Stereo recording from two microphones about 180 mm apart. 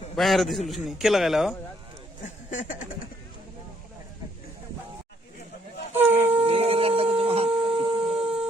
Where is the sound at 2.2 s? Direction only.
45° left (ahead or behind).